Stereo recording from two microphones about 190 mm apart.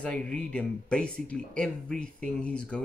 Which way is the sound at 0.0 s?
5° left (ahead or behind).